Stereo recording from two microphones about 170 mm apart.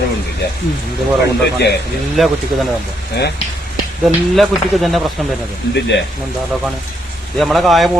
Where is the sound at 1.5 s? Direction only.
80° left.